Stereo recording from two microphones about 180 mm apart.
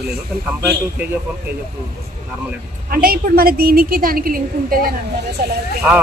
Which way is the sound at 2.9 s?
55° right (ahead or behind).